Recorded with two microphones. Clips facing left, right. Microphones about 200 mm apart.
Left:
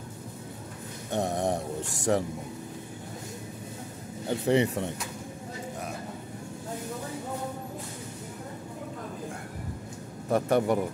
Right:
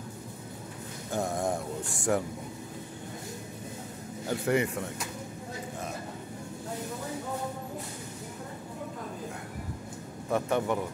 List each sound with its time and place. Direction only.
1.1 s speech: 20° left (ahead or behind)
4.3 s speech: 30° left (ahead or behind)
10.3 s speech: 40° left (ahead or behind)